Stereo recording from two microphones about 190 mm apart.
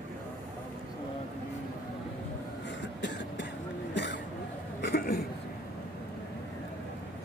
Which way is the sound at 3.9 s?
70° left (ahead or behind).